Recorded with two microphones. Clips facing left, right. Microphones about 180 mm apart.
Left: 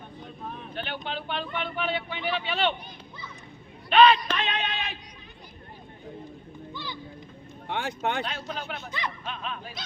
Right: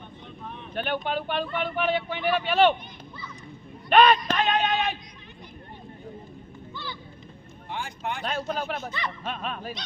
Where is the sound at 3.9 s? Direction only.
45° right (ahead or behind).